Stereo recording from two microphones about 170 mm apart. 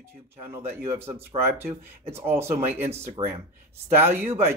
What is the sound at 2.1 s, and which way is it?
Speech, 15° right (ahead or behind).